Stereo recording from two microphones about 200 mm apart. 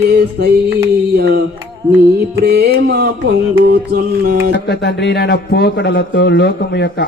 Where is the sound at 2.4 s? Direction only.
50° right (ahead or behind).